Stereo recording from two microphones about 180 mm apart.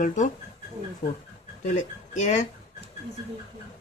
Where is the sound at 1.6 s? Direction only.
40° left (ahead or behind).